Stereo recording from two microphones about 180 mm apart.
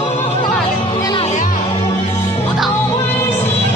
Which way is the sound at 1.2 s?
45° left (ahead or behind).